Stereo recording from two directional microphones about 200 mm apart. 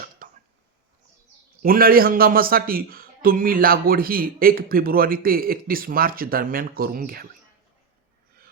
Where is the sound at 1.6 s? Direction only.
45° right (ahead or behind).